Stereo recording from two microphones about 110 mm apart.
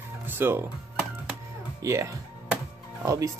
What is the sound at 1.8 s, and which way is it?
Speech, 25° right (ahead or behind).